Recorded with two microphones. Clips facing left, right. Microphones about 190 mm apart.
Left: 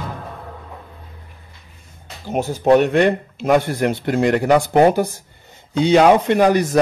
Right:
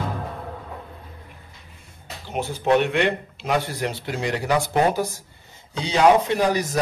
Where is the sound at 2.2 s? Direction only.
45° left (ahead or behind).